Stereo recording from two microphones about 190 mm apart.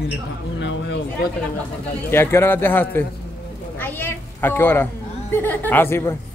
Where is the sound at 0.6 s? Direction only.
75° left (ahead or behind).